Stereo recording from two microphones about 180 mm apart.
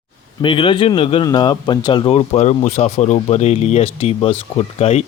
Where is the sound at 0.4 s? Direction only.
30° left (ahead or behind).